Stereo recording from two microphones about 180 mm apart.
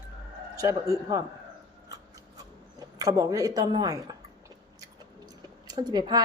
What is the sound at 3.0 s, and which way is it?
Speech, 20° right (ahead or behind).